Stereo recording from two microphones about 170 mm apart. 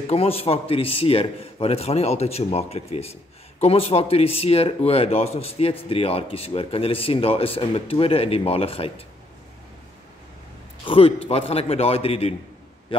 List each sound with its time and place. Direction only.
0.0 s a man's voice: 35° left (ahead or behind)
10.9 s a man's voice: 35° left (ahead or behind)